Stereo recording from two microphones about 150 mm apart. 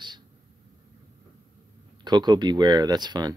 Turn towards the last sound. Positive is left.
turn(degrees=-30)  # may be behind; listen again after turning